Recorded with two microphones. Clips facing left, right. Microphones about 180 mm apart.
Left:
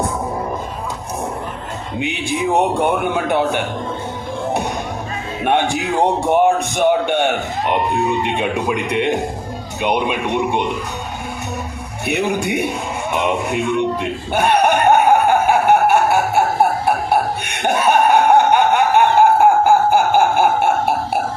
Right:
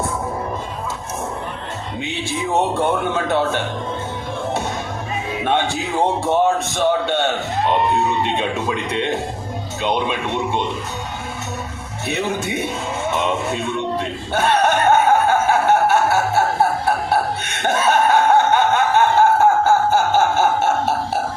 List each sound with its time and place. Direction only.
2.0 s a man's voice: 15° left (ahead or behind)
5.5 s a man's voice: 15° left (ahead or behind)
12.0 s a sound: 15° left (ahead or behind)